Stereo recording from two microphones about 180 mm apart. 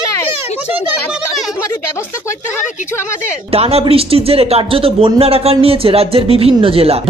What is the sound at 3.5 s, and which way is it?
Speech, 35° right (ahead or behind).